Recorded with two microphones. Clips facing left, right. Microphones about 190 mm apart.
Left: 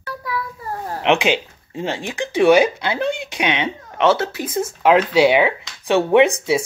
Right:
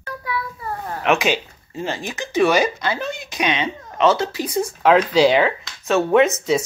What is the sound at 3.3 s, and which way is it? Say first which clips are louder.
Speech: even; 65° left (ahead or behind).